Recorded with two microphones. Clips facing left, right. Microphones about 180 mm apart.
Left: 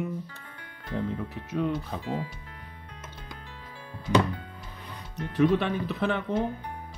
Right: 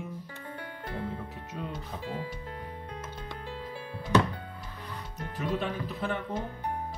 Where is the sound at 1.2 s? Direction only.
75° left (ahead or behind).